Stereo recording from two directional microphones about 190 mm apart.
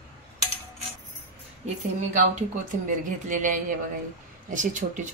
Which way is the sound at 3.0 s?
45° right (ahead or behind).